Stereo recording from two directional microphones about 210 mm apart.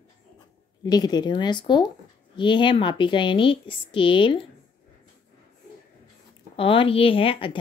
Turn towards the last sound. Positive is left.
turn(degrees=25)  # may be behind; listen again after turning